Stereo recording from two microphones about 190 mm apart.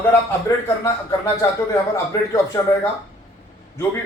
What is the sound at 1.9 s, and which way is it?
Speech, 15° left (ahead or behind).